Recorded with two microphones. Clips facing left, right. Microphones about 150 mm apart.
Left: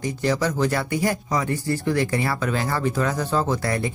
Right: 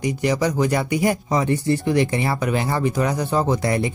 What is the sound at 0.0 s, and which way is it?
Speech, 15° right (ahead or behind).